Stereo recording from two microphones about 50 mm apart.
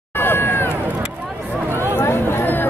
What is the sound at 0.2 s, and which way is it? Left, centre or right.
Run, left.